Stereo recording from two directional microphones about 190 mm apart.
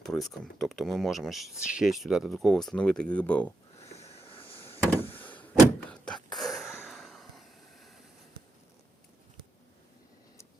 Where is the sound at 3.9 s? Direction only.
35° left (ahead or behind).